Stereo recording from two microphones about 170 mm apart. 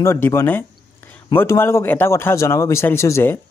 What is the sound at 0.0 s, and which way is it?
Speech, 15° left (ahead or behind).